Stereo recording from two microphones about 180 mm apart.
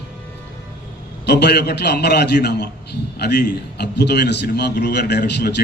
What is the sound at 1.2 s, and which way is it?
A man's voice, 65° left (ahead or behind).